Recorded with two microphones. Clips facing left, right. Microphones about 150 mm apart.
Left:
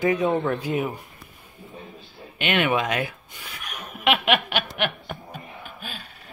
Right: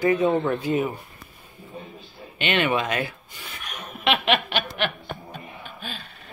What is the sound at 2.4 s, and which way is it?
Speech, 10° left (ahead or behind).